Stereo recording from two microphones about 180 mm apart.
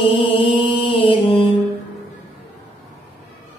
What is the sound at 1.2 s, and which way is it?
Mantra, 30° left (ahead or behind).